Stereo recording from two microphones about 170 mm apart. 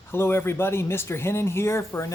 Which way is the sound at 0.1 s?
15° left (ahead or behind).